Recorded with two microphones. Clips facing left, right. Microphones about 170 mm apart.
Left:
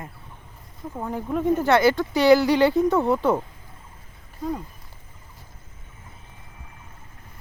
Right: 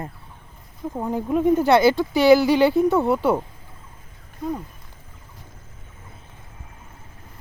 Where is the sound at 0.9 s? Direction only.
20° right (ahead or behind).